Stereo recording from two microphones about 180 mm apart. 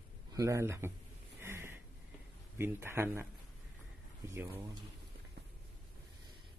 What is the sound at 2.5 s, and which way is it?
Speech, 15° right (ahead or behind).